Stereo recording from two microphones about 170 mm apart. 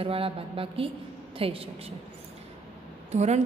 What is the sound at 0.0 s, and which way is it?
A woman's voice, 35° right (ahead or behind).